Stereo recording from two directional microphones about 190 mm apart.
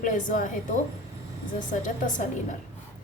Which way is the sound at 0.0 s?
45° left (ahead or behind).